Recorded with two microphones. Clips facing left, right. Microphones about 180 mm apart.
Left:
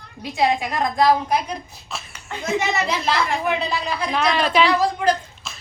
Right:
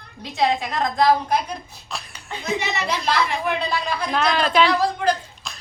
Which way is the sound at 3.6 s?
5° left (ahead or behind).